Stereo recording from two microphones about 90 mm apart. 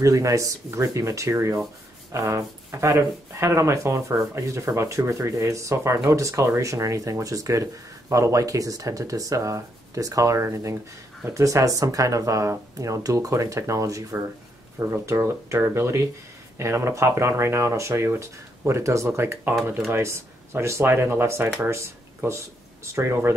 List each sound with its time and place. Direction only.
0.0 s speech: 35° right (ahead or behind)